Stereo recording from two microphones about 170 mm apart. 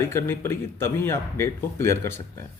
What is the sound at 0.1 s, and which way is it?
Speech, 15° left (ahead or behind).